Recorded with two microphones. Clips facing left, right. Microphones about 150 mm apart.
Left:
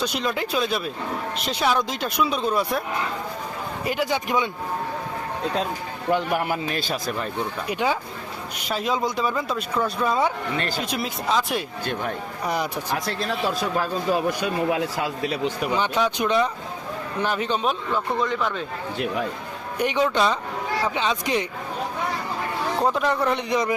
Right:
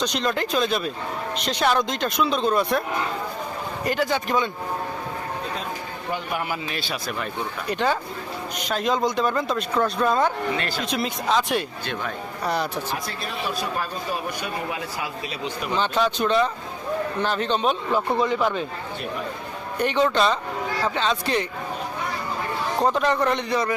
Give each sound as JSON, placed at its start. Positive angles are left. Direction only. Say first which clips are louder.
{"t": 0.0, "sound": "speech", "louder": "right 1 dB", "side_deg": 5}
{"t": 3.8, "sound": "speech", "louder": "right 1 dB", "side_deg": 10}
{"t": 6.1, "sound": "a man's voice", "louder": "left 3 dB", "side_deg": 50}
{"t": 7.7, "sound": "speech", "louder": "right 2 dB", "side_deg": 10}
{"t": 15.7, "sound": "speech", "louder": "right 3 dB", "side_deg": 15}
{"t": 19.8, "sound": "speech", "louder": "right 1 dB", "side_deg": 10}
{"t": 22.8, "sound": "speech", "louder": "right 2 dB", "side_deg": 5}